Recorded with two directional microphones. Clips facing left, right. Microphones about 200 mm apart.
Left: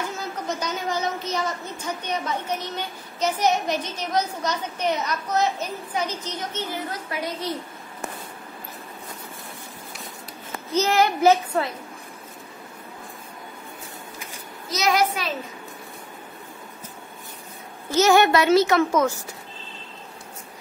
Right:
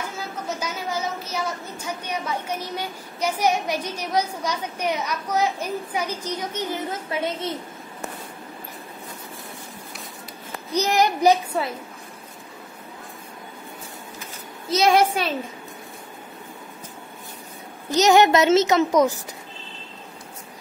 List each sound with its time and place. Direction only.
0.5 s a woman's voice: 10° right (ahead or behind); by 7.5 s 25° right (ahead or behind)
10.7 s a woman's voice: 15° right (ahead or behind)
14.7 s a child's voice: 30° right (ahead or behind)
17.8 s a child's voice: 20° right (ahead or behind)